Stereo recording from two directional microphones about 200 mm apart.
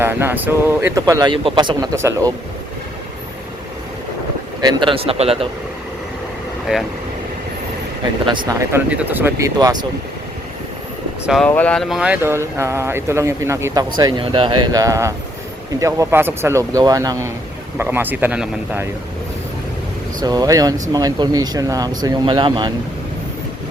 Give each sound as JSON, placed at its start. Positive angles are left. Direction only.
{"t": 0.0, "sound": "speech", "side_deg": -10}
{"t": 4.6, "sound": "speech", "side_deg": -25}
{"t": 6.7, "sound": "speech", "side_deg": -5}
{"t": 8.3, "sound": "speech", "side_deg": -25}
{"t": 8.7, "sound": "speech", "side_deg": -10}
{"t": 11.3, "sound": "speech", "side_deg": 5}
{"t": 20.2, "sound": "speech", "side_deg": -20}